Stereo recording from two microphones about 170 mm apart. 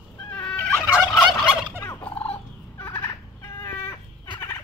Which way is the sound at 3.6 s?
25° left (ahead or behind).